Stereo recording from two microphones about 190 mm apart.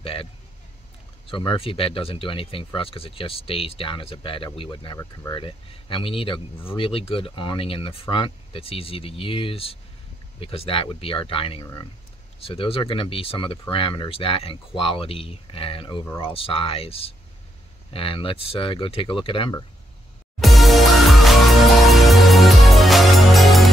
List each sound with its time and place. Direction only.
0.0 s vehicle: 30° left (ahead or behind)
1.2 s speech: 25° left (ahead or behind)
20.3 s music: centre (ahead or behind)